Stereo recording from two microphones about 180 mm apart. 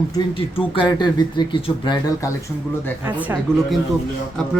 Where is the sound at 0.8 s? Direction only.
25° left (ahead or behind).